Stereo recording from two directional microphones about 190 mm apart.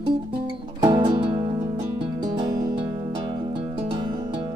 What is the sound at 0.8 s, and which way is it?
Music, 20° right (ahead or behind).